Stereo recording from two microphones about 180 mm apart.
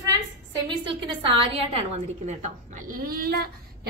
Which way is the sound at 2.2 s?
45° right (ahead or behind).